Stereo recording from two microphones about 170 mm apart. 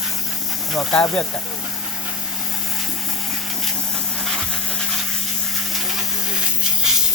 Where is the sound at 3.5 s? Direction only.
Centre (ahead or behind).